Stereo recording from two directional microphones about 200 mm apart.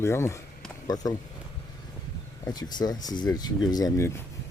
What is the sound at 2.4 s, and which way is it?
Speech, 20° left (ahead or behind).